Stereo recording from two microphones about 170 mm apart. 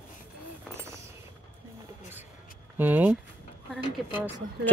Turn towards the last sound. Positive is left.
turn(degrees=-10)  # may be behind; listen again after turning